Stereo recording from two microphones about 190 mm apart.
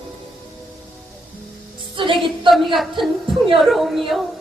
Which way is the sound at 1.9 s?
25° right (ahead or behind).